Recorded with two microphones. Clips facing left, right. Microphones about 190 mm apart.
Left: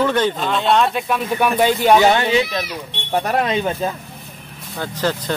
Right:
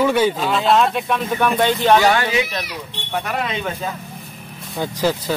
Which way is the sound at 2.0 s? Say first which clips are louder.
Left 2 dB; 20° left (ahead or behind).